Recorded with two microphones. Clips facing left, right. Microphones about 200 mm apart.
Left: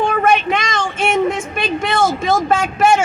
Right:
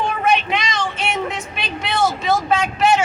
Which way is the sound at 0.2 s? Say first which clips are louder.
Left 3 dB; 50° left (ahead or behind).